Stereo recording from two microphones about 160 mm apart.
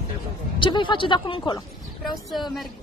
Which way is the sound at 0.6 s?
30° left (ahead or behind).